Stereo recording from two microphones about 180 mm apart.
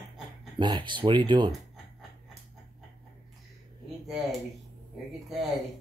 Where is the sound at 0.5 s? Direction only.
25° right (ahead or behind).